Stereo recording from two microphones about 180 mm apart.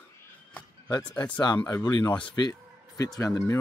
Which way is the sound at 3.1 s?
15° left (ahead or behind).